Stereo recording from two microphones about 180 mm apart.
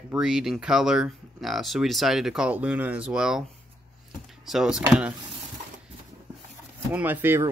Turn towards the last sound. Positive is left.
turn(degrees=-10)  # may be behind; listen again after turning